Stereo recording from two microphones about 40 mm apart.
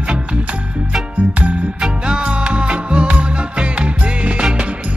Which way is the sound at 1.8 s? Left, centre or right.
Right.